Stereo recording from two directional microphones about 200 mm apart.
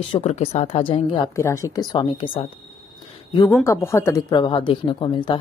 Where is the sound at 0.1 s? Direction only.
30° left (ahead or behind).